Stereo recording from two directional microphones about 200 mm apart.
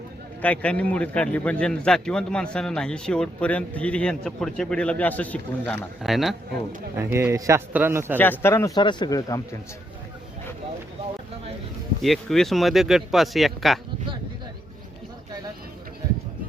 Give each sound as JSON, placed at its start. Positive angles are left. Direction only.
{"t": 0.4, "sound": "a man's voice", "side_deg": 5}
{"t": 6.9, "sound": "speech", "side_deg": -10}
{"t": 8.2, "sound": "speech", "side_deg": 10}
{"t": 12.0, "sound": "a man's voice", "side_deg": 0}